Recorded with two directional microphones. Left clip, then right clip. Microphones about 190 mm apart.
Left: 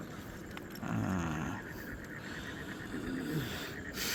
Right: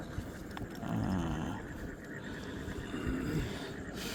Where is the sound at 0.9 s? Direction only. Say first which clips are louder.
Left 1 dB; 10° right (ahead or behind).